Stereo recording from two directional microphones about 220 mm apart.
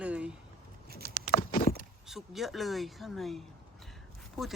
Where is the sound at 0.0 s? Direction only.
5° right (ahead or behind).